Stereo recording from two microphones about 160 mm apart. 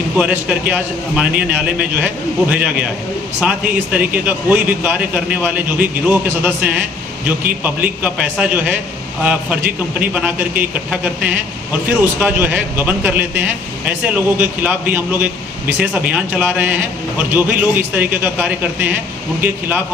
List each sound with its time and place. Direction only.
0.2 s a man's voice: 10° right (ahead or behind)